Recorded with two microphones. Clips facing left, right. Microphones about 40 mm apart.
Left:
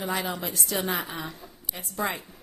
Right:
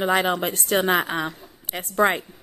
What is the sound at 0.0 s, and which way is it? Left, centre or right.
A woman's voice, right.